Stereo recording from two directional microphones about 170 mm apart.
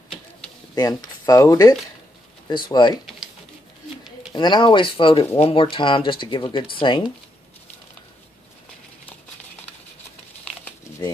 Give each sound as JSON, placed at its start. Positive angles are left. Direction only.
{"t": 0.7, "sound": "speech", "side_deg": 20}
{"t": 4.3, "sound": "speech", "side_deg": 25}